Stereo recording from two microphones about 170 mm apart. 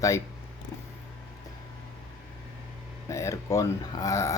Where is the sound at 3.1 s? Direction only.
15° left (ahead or behind).